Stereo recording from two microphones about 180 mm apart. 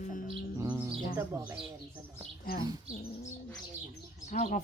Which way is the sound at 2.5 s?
55° left (ahead or behind).